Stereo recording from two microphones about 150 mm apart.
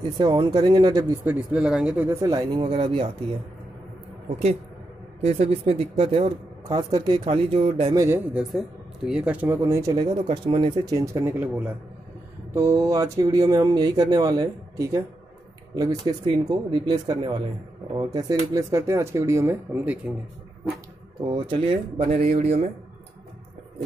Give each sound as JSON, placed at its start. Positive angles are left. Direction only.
{"t": 0.2, "sound": "speech", "side_deg": -30}
{"t": 1.2, "sound": "speech", "side_deg": -10}
{"t": 2.0, "sound": "speech", "side_deg": -25}
{"t": 5.2, "sound": "speech", "side_deg": -45}
{"t": 7.9, "sound": "speech", "side_deg": -20}
{"t": 8.3, "sound": "speech", "side_deg": -5}
{"t": 10.2, "sound": "speech", "side_deg": -35}
{"t": 21.2, "sound": "speech", "side_deg": -35}